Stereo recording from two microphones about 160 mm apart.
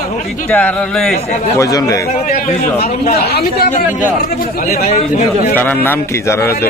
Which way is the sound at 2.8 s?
75° left (ahead or behind).